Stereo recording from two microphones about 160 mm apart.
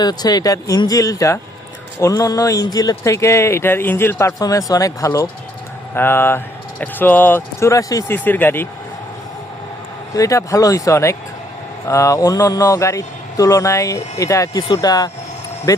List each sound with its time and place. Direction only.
0.0 s speech: 25° left (ahead or behind)
10.2 s speech: 20° left (ahead or behind)